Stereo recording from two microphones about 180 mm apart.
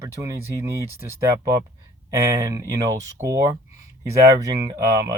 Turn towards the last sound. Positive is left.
turn(degrees=-15)  # may be behind; listen again after turning